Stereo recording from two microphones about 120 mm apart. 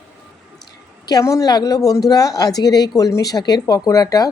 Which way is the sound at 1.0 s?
30° left (ahead or behind).